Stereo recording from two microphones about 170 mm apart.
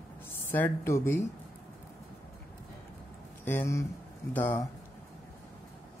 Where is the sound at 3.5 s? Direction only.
15° left (ahead or behind).